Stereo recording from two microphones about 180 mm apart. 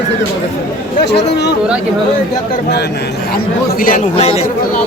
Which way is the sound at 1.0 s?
70° left (ahead or behind).